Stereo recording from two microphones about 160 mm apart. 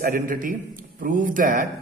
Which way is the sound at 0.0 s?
60° right (ahead or behind).